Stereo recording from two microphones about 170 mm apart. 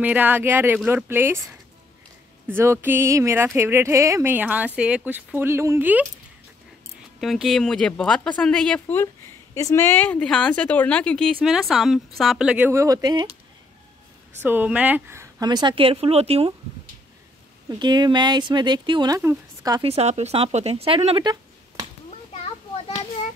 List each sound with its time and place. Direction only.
0.0 s speech: 10° right (ahead or behind)
7.2 s speech: centre (ahead or behind); by 13.3 s 25° right (ahead or behind)
14.4 s a woman's voice: 10° right (ahead or behind); by 16.5 s 35° right (ahead or behind)
17.6 s a woman's voice: 25° right (ahead or behind)
19.8 s speech: 40° right (ahead or behind)